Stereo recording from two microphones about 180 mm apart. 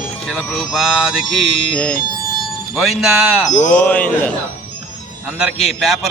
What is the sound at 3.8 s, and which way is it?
Speech, 10° left (ahead or behind).